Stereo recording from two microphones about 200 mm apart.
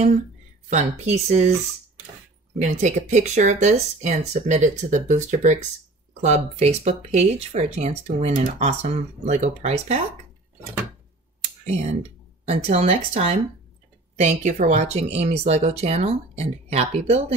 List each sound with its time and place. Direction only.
0.7 s speech: 35° right (ahead or behind)
2.6 s speech: 35° right (ahead or behind)
11.6 s speech: 30° right (ahead or behind)